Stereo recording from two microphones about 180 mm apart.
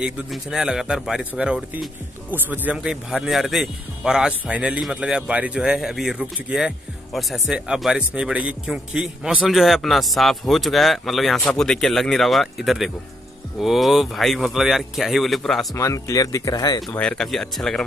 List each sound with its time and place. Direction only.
0.0 s a man's voice: centre (ahead or behind)
15.7 s speech: 15° left (ahead or behind)
16.9 s a man's voice: 5° left (ahead or behind)